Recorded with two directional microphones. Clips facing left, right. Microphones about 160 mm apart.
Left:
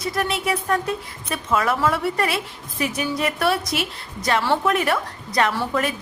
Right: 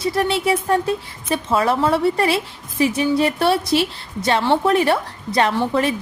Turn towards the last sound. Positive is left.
turn(degrees=-30)  # may be behind; listen again after turning